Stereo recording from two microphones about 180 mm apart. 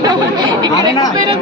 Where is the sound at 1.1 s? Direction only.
20° right (ahead or behind).